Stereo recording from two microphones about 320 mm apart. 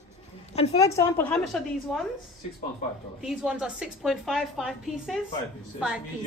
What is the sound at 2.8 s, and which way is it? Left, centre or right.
Speech, left.